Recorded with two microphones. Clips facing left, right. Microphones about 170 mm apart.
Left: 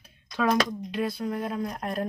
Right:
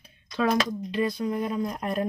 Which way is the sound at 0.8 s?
5° left (ahead or behind).